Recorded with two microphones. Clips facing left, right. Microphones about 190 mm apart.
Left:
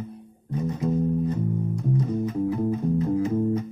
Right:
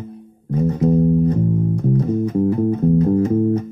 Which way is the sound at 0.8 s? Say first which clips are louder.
Right 9 dB; 45° right (ahead or behind).